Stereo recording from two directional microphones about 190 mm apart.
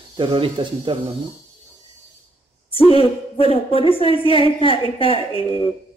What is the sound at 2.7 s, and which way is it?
A woman's voice, 30° left (ahead or behind).